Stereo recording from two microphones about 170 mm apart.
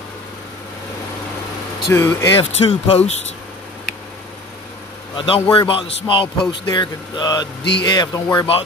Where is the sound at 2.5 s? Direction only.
35° left (ahead or behind).